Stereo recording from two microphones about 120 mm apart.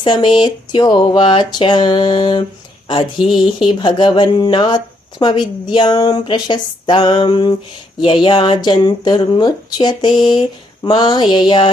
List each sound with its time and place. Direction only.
0.0 s speech: 40° left (ahead or behind)
2.8 s a sound: 40° left (ahead or behind)
3.2 s speech: 5° right (ahead or behind)
3.6 s speech: 40° left (ahead or behind)